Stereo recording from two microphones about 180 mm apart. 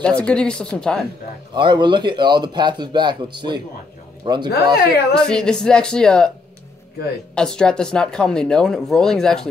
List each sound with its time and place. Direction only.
0.2 s a woman's voice: 5° left (ahead or behind)
1.5 s speech: 25° right (ahead or behind)
5.1 s a woman's voice: 5° left (ahead or behind)
7.3 s a woman's voice: 5° left (ahead or behind)